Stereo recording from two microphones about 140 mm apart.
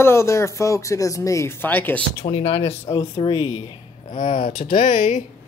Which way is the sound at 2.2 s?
40° left (ahead or behind).